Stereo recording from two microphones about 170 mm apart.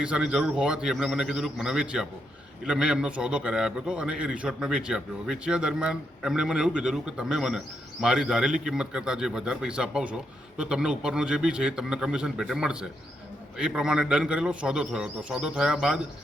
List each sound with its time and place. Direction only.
0.0 s a man's voice: 5° right (ahead or behind)